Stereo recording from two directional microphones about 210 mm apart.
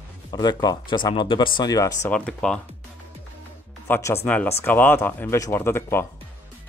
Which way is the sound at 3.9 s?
10° left (ahead or behind).